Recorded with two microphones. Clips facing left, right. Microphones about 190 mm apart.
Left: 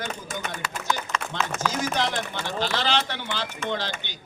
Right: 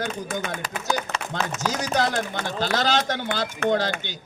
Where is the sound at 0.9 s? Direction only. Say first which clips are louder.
Right 2 dB; 35° right (ahead or behind); by 3.7 s 55° right (ahead or behind).